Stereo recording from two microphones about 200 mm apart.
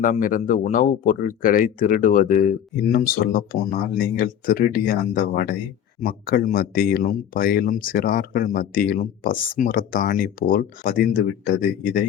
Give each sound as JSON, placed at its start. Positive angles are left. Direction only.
{"t": 0.0, "sound": "speech", "side_deg": 40}